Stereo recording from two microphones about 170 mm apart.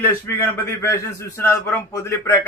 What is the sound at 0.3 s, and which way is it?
A man's voice, 15° left (ahead or behind).